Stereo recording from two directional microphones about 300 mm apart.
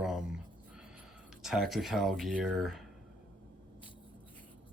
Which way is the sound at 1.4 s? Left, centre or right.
Centre.